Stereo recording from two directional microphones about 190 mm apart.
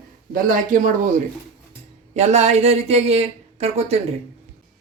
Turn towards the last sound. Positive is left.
turn(degrees=-35)  # may be behind; listen again after turning